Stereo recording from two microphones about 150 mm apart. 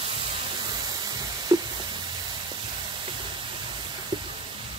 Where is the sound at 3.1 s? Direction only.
35° right (ahead or behind).